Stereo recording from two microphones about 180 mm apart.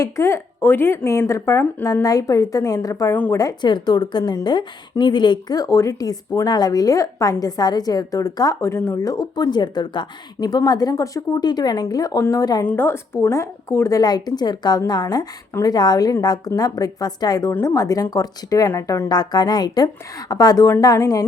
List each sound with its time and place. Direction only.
0.0 s speech: 15° left (ahead or behind)